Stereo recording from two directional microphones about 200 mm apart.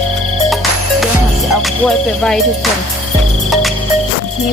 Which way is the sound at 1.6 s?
Centre (ahead or behind).